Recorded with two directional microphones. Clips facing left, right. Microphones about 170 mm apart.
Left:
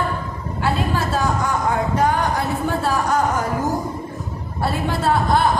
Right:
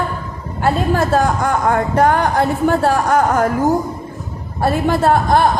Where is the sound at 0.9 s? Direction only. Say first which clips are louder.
Right 6 dB; 50° right (ahead or behind).